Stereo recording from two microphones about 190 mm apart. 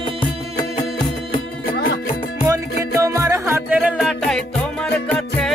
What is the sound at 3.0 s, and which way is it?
Music, 15° right (ahead or behind).